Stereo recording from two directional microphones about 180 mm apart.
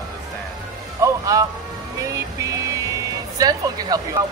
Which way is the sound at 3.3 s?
20° right (ahead or behind).